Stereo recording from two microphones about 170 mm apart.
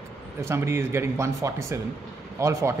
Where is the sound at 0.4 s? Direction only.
15° right (ahead or behind).